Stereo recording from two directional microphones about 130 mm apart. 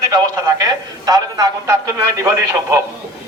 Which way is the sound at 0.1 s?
30° right (ahead or behind).